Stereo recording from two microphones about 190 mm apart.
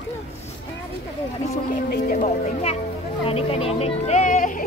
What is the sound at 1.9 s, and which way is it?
Speech, 45° left (ahead or behind).